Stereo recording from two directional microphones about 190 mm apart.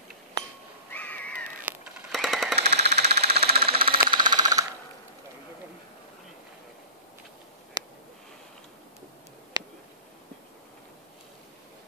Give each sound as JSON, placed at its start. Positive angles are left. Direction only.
{"t": 0.9, "sound": "crow", "side_deg": 10}
{"t": 1.6, "sound": "machine gun", "side_deg": -5}
{"t": 2.6, "sound": "engine", "side_deg": -60}
{"t": 3.7, "sound": "sewing machine", "side_deg": -30}
{"t": 4.1, "sound": "a sound", "side_deg": -25}
{"t": 7.8, "sound": "a sound", "side_deg": -20}